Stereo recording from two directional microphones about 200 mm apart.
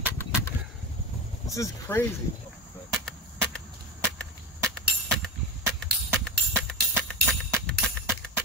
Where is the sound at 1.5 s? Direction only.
15° left (ahead or behind).